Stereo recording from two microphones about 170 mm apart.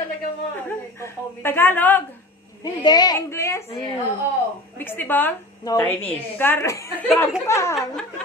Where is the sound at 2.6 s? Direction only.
25° left (ahead or behind).